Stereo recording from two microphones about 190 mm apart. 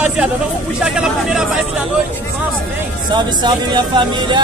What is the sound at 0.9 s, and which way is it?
Speech, 5° right (ahead or behind).